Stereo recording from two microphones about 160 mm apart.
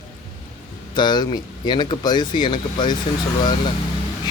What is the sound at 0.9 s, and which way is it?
Speech, 25° left (ahead or behind).